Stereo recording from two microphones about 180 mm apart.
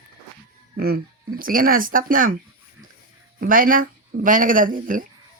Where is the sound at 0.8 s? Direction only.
60° right (ahead or behind).